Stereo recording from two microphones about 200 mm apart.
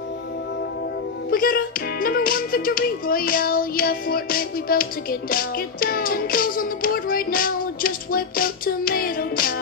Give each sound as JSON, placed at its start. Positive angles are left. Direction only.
{"t": 1.3, "sound": "music", "side_deg": 45}